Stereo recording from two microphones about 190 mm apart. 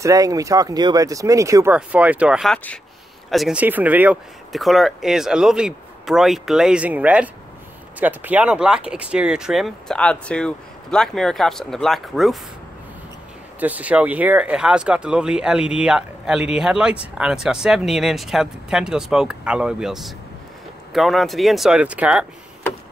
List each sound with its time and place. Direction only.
0.0 s speech: 20° right (ahead or behind); by 12.4 s centre (ahead or behind)
13.6 s speech: 10° right (ahead or behind)